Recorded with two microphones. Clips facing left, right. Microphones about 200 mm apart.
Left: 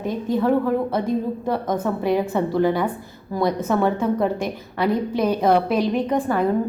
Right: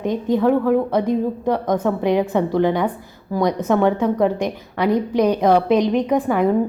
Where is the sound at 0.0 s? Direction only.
20° right (ahead or behind).